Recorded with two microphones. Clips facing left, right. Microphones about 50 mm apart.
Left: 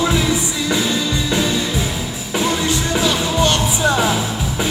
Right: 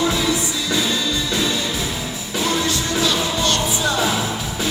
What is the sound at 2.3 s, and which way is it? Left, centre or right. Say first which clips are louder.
Music: left 2 dB; left.